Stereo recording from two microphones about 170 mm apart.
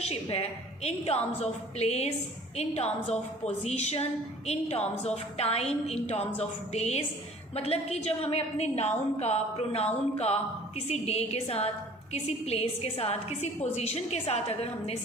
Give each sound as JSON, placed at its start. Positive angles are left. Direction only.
{"t": 0.0, "sound": "a woman's voice", "side_deg": 35}